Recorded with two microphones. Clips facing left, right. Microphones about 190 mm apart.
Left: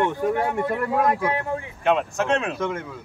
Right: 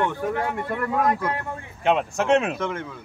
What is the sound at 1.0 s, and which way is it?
Speech, 5° left (ahead or behind).